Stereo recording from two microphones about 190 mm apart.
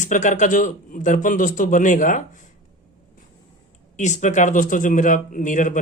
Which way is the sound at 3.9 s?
40° left (ahead or behind).